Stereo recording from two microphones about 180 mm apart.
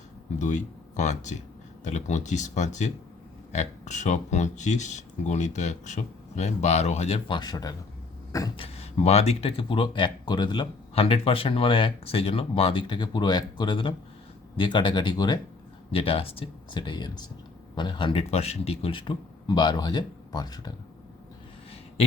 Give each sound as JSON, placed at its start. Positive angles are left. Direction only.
{"t": 0.3, "sound": "speech", "side_deg": 40}
{"t": 8.5, "sound": "speech", "side_deg": 35}